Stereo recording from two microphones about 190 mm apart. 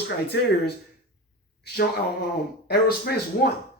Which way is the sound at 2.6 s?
55° left (ahead or behind).